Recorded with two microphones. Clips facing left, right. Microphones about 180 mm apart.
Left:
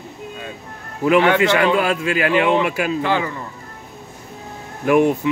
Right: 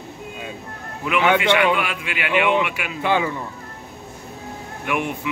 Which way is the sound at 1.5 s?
35° left (ahead or behind).